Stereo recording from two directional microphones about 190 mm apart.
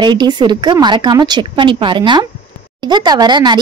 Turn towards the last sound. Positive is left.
turn(degrees=-20)  # may be behind; listen again after turning